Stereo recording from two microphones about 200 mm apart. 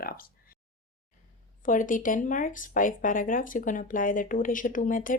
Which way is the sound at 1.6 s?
40° left (ahead or behind).